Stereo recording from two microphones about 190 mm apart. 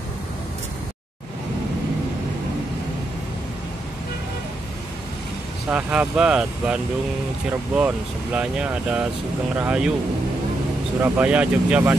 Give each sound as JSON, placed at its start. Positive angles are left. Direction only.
{"t": 5.7, "sound": "speech", "side_deg": -5}
{"t": 11.0, "sound": "speech", "side_deg": -10}